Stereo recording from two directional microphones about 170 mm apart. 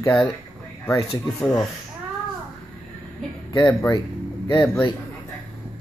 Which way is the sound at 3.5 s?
20° left (ahead or behind).